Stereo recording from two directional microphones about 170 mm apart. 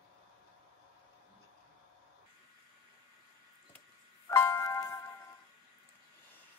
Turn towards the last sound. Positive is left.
turn(degrees=15)  # may be behind; listen again after turning